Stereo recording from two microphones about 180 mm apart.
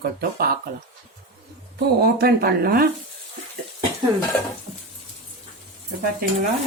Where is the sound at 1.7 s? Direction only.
60° right (ahead or behind).